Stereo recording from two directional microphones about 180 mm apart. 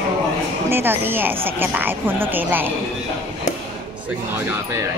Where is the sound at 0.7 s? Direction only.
10° right (ahead or behind).